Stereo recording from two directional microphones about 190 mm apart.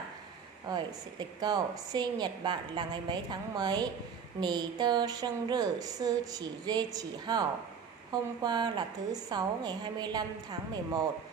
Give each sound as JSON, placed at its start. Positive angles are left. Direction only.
{"t": 0.7, "sound": "a woman's voice", "side_deg": -20}